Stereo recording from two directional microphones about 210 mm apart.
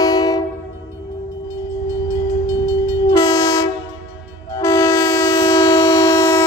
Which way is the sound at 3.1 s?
15° left (ahead or behind).